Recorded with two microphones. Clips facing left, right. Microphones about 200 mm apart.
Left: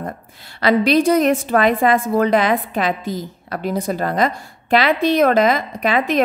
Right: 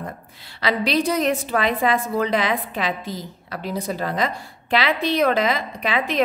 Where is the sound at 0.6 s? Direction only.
50° left (ahead or behind).